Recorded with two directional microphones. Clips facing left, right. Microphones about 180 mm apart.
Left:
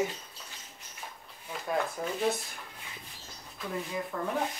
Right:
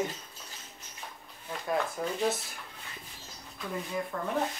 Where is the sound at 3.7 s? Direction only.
Centre (ahead or behind).